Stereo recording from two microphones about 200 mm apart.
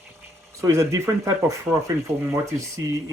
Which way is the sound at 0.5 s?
15° right (ahead or behind).